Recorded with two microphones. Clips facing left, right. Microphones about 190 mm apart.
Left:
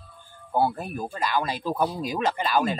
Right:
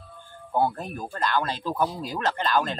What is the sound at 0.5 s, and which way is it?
Speech, 5° left (ahead or behind).